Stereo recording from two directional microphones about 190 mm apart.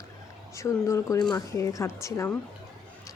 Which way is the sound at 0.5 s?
15° left (ahead or behind).